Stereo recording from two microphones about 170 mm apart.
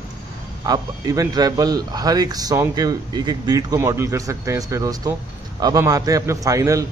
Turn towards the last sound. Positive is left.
turn(degrees=-20)  # may be behind; listen again after turning